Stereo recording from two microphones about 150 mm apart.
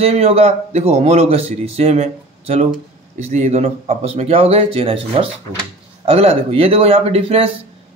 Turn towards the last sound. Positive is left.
turn(degrees=-40)  # may be behind; listen again after turning